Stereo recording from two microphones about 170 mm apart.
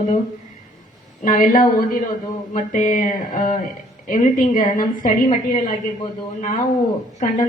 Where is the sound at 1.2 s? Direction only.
55° left (ahead or behind).